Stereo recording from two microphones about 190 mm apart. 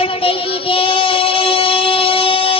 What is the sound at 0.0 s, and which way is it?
Child singing, 30° left (ahead or behind).